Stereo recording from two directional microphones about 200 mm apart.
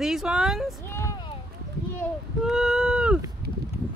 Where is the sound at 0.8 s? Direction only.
10° left (ahead or behind).